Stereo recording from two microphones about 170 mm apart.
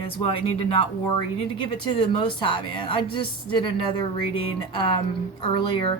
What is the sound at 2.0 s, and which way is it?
A woman's voice, 25° left (ahead or behind).